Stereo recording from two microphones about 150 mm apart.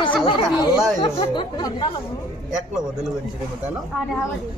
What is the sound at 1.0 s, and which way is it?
Speech, 30° left (ahead or behind).